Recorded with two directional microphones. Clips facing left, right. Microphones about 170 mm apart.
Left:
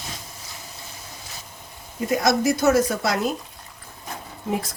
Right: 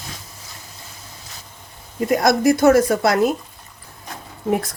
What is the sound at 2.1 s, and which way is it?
A woman's voice, 55° right (ahead or behind).